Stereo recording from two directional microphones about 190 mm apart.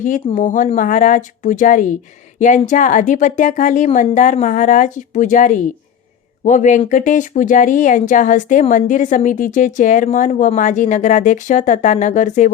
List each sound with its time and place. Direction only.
0.3 s speech: 40° left (ahead or behind)